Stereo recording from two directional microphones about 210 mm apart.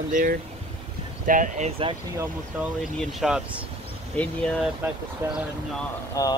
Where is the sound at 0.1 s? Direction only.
40° right (ahead or behind).